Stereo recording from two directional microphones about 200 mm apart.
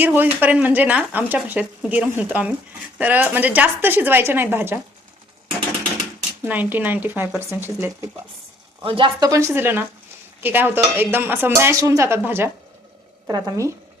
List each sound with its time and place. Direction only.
0.0 s speech: 10° right (ahead or behind)
6.4 s speech: 10° right (ahead or behind)
8.8 s a woman's voice: 25° right (ahead or behind)